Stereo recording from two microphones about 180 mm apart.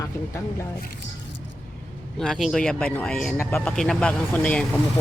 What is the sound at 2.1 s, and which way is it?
Speech, centre (ahead or behind).